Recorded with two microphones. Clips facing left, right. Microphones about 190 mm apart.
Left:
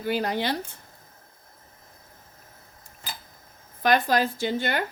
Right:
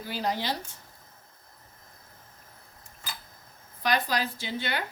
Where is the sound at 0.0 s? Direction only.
60° left (ahead or behind).